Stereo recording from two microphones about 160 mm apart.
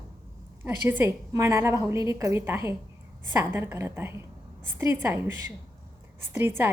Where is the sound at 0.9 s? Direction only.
15° right (ahead or behind).